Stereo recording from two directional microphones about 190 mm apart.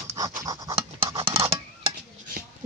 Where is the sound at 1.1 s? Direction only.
30° right (ahead or behind).